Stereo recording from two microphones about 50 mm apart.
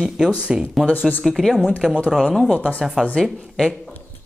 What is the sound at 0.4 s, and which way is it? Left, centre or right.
Speech, right.